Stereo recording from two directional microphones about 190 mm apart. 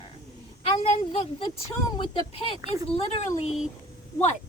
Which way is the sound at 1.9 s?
25° left (ahead or behind).